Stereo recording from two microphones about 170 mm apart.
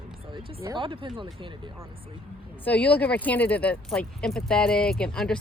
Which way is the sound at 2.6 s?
10° left (ahead or behind).